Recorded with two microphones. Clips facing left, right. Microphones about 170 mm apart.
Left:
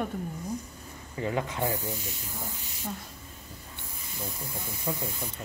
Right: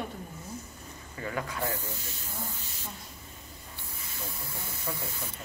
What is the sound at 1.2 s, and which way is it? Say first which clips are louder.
Speech: left 4 dB; 20° left (ahead or behind).